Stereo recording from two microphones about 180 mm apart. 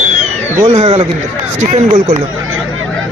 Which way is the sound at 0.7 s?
35° right (ahead or behind).